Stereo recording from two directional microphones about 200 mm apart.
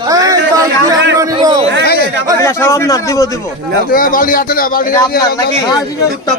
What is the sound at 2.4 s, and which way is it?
A man's voice, 15° left (ahead or behind).